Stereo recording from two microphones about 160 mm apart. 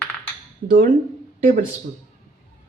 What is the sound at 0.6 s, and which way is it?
Speech, 55° right (ahead or behind).